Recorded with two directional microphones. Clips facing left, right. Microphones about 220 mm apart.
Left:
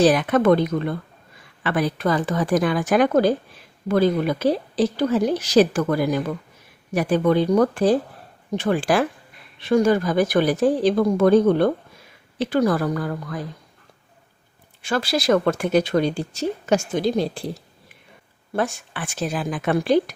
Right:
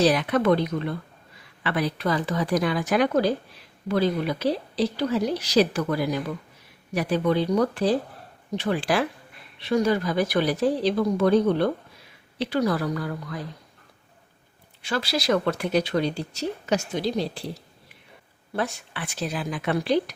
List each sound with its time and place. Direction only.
0.0 s speech: 50° left (ahead or behind)
14.8 s speech: 50° left (ahead or behind)